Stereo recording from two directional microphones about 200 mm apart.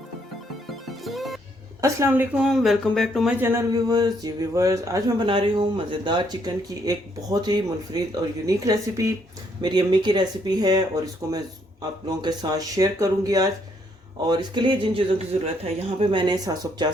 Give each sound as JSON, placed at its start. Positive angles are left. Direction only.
{"t": 1.0, "sound": "music", "side_deg": 0}
{"t": 1.8, "sound": "speech", "side_deg": -15}
{"t": 2.4, "sound": "speech", "side_deg": 0}
{"t": 3.4, "sound": "speech", "side_deg": -15}